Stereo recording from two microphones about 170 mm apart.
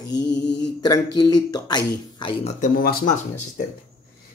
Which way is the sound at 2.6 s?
55° left (ahead or behind).